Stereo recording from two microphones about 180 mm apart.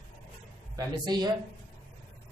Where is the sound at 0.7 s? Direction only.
20° right (ahead or behind).